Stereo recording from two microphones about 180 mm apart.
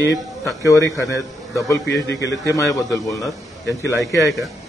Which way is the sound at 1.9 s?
70° left (ahead or behind).